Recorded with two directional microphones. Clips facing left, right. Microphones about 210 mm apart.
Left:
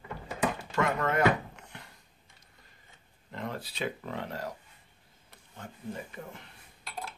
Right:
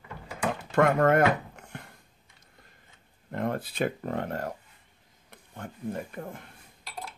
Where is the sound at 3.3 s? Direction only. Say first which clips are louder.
Right 7 dB; 55° right (ahead or behind).